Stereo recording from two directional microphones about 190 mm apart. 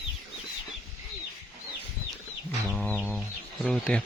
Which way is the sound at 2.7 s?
5° left (ahead or behind).